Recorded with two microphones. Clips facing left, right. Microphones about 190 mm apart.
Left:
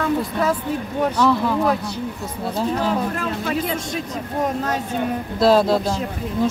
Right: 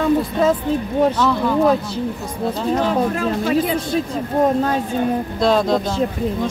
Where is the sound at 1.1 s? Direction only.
Centre (ahead or behind).